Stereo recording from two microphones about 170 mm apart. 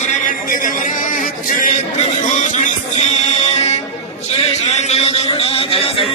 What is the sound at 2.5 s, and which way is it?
Music, 40° left (ahead or behind).